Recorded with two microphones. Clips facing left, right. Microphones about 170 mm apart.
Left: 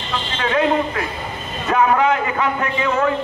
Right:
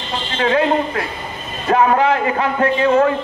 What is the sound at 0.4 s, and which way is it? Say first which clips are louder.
A man's voice: right 2 dB; 30° right (ahead or behind).